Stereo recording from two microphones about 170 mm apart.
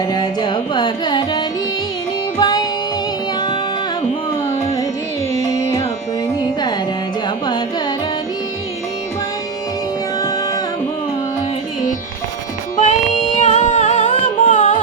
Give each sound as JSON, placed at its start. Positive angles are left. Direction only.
{"t": 0.1, "sound": "carnatic music", "side_deg": 25}
{"t": 2.4, "sound": "music", "side_deg": 25}
{"t": 5.3, "sound": "music", "side_deg": 20}
{"t": 10.2, "sound": "music", "side_deg": 20}
{"t": 12.7, "sound": "music", "side_deg": 45}